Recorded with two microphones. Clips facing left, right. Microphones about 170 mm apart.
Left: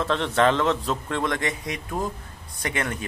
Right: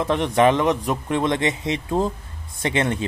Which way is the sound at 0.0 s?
15° right (ahead or behind).